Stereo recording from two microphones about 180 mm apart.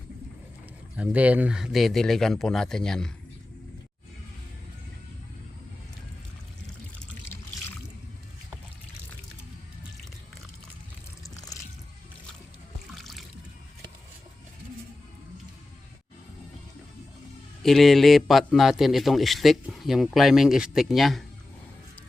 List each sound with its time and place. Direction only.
0.9 s a man's voice: 10° right (ahead or behind)
11.2 s water: 20° left (ahead or behind)
12.9 s boat: centre (ahead or behind)
17.6 s a man's voice: centre (ahead or behind)